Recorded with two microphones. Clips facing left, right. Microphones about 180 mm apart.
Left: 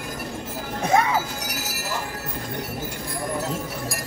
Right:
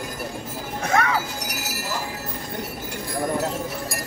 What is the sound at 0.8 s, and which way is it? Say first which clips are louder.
Music: left 2 dB; 20° left (ahead or behind).